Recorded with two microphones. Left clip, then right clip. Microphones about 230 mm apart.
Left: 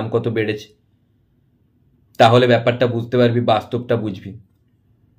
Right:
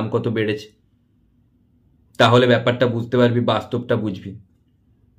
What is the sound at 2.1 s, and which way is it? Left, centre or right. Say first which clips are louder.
Speech: left 2 dB; centre.